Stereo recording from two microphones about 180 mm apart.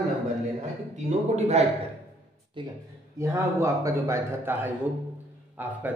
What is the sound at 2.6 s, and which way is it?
Speech, 25° right (ahead or behind).